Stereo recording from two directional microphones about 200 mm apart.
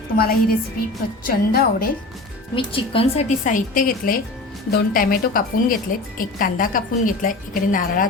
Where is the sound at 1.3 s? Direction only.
45° left (ahead or behind).